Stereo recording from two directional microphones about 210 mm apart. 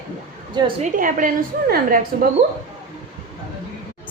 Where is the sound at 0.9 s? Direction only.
40° right (ahead or behind).